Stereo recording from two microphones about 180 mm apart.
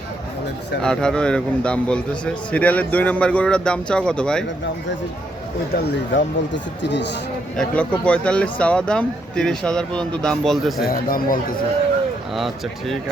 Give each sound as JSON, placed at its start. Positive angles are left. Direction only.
{"t": 0.8, "sound": "a man's voice", "side_deg": 5}
{"t": 5.7, "sound": "speech", "side_deg": 75}
{"t": 7.5, "sound": "a man's voice", "side_deg": 5}
{"t": 10.8, "sound": "speech", "side_deg": 55}